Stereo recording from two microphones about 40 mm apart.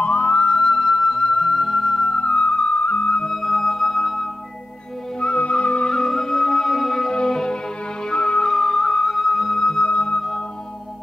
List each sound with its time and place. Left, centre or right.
0.0 s music: left
0.5 s music: centre
2.1 s music: left
3.3 s music: centre
5.2 s music: left
6.0 s music: centre
7.1 s music: centre
8.5 s music: centre
9.6 s flute: centre
9.8 s flute: left